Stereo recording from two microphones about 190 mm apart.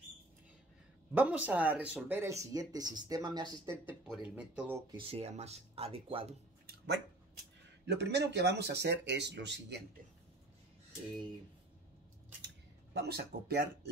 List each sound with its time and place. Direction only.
1.1 s speech: 10° right (ahead or behind)
3.8 s speech: 5° right (ahead or behind)
4.9 s speech: 30° right (ahead or behind)
7.8 s speech: 65° right (ahead or behind)
12.9 s speech: 60° right (ahead or behind)